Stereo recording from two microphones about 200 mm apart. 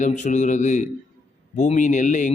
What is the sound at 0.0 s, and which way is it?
A man's voice, 35° left (ahead or behind).